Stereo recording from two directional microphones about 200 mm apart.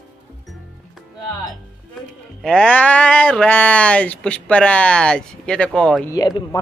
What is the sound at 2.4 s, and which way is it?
Speech, 5° left (ahead or behind).